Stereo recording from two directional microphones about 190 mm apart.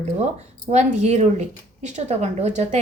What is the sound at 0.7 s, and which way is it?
Speech, 35° right (ahead or behind).